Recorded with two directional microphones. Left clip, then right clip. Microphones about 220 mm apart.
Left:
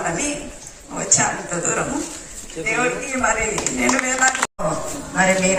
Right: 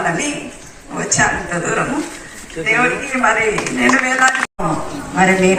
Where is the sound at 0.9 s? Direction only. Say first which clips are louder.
Right 4 dB; 55° left (ahead or behind).